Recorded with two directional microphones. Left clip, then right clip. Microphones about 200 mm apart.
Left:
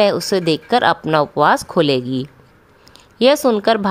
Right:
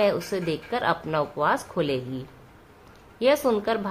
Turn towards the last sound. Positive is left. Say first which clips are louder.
# left 9 dB
turn(degrees=50)  # may be behind; listen again after turning